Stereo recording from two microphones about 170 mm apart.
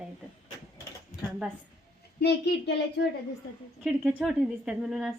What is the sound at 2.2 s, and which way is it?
Speech, 75° left (ahead or behind).